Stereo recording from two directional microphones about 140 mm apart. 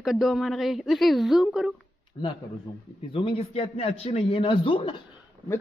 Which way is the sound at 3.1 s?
40° left (ahead or behind).